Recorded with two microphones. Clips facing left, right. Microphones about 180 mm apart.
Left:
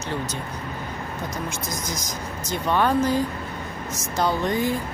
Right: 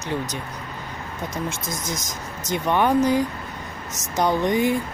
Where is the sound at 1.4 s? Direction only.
25° right (ahead or behind).